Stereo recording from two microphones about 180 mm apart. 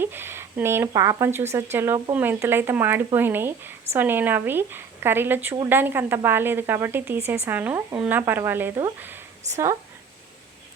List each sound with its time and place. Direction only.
0.0 s speech: 10° right (ahead or behind)